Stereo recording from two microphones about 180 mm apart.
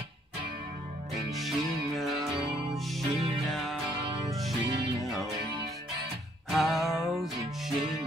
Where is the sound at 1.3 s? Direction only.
Centre (ahead or behind).